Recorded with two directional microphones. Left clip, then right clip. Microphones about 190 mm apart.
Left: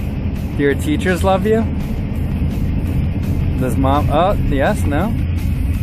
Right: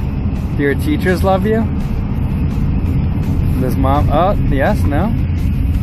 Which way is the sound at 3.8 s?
20° left (ahead or behind).